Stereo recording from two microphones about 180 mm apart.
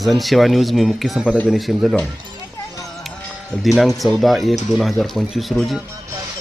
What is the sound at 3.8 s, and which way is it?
Speech, centre (ahead or behind).